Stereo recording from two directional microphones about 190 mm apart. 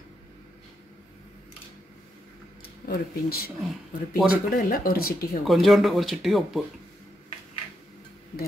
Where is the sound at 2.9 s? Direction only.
55° left (ahead or behind).